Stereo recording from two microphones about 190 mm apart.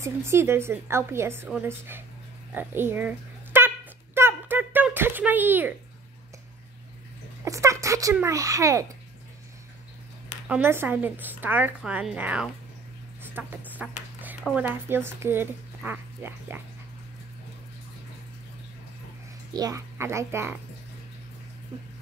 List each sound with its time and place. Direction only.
0.0 s speech: 15° right (ahead or behind)
2.5 s a sound: 10° right (ahead or behind)
7.4 s speech: 15° right (ahead or behind)
10.5 s speech: 10° right (ahead or behind)
13.2 s a sound: 10° right (ahead or behind)
14.5 s speech: 10° right (ahead or behind)
19.5 s speech: 20° right (ahead or behind)